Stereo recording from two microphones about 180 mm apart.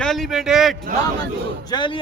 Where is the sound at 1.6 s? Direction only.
25° left (ahead or behind).